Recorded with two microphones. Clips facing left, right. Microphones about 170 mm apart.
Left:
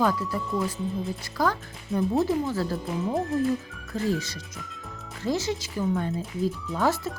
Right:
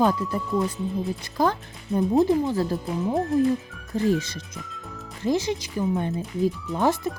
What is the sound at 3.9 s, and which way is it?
Speech, 20° right (ahead or behind).